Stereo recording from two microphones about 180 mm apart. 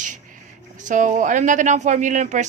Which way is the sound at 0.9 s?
45° right (ahead or behind).